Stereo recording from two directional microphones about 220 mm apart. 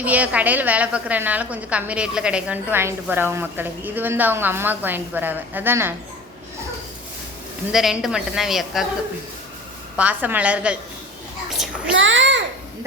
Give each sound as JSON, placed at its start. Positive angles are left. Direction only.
{"t": 0.0, "sound": "a woman's voice", "side_deg": -5}
{"t": 7.7, "sound": "speech", "side_deg": 0}
{"t": 10.0, "sound": "a woman's voice", "side_deg": -5}
{"t": 11.9, "sound": "a child's voice", "side_deg": -60}